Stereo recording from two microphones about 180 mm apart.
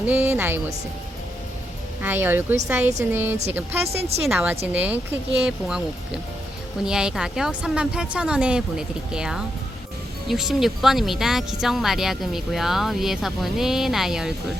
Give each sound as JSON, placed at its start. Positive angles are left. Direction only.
{"t": 0.0, "sound": "speech", "side_deg": -10}
{"t": 2.0, "sound": "speech", "side_deg": -10}
{"t": 3.8, "sound": "speech", "side_deg": -35}
{"t": 4.3, "sound": "speech", "side_deg": -10}
{"t": 6.8, "sound": "speech", "side_deg": -5}